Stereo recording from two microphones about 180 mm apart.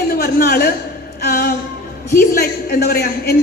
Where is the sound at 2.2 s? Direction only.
55° left (ahead or behind).